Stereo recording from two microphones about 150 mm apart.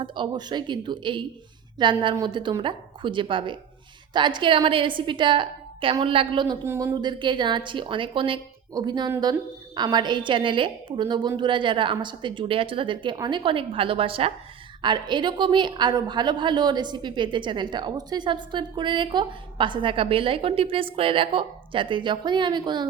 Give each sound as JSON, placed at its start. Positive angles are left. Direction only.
{"t": 0.0, "sound": "a woman's voice", "side_deg": -30}
{"t": 6.7, "sound": "a woman's voice", "side_deg": -20}